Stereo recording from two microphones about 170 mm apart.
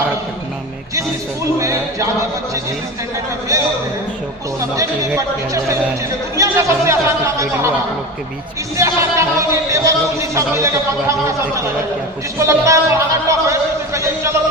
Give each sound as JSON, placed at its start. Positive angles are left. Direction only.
{"t": 1.5, "sound": "speech", "side_deg": -20}
{"t": 3.5, "sound": "a man's voice", "side_deg": -20}
{"t": 4.7, "sound": "speech", "side_deg": -20}
{"t": 8.7, "sound": "speech", "side_deg": -15}
{"t": 12.4, "sound": "a sound", "side_deg": -15}